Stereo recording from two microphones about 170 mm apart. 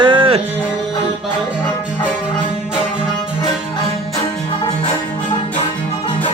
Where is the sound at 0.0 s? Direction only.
30° right (ahead or behind).